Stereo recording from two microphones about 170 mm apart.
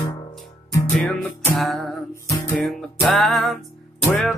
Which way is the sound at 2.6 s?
Centre (ahead or behind).